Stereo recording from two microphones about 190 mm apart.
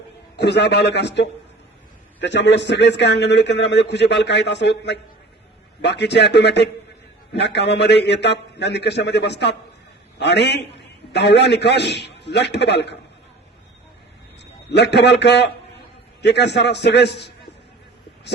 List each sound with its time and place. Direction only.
0.3 s a man's voice: 65° left (ahead or behind)
2.2 s a man's voice: 65° left (ahead or behind)
14.7 s a man's voice: 65° left (ahead or behind)